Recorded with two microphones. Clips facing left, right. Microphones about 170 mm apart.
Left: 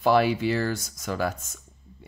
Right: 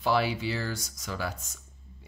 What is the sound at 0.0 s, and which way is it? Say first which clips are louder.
Speech: left 6 dB; 50° left (ahead or behind).